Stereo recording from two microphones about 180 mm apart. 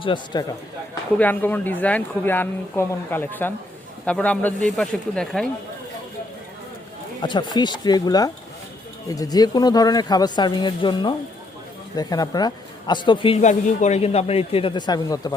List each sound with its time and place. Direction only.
0.0 s a man's voice: 25° left (ahead or behind)
1.2 s speech: 10° left (ahead or behind)
7.2 s a man's voice: 25° left (ahead or behind)